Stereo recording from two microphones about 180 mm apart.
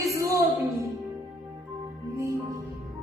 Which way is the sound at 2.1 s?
15° right (ahead or behind).